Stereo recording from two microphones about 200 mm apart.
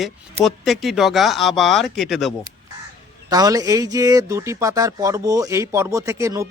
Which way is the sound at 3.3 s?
20° right (ahead or behind).